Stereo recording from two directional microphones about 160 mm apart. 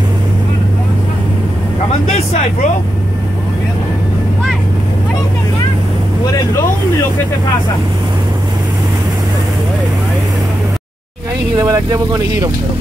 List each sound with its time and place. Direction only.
2.0 s speech: 40° left (ahead or behind)
11.5 s speech: 20° right (ahead or behind)